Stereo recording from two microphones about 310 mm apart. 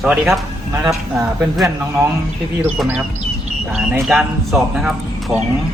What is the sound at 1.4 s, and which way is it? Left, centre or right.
Speech, centre.